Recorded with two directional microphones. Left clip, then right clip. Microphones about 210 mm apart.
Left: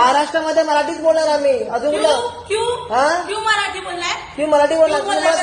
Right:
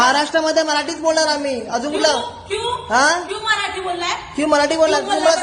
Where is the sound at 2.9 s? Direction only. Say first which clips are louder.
Right 1 dB; 35° right (ahead or behind).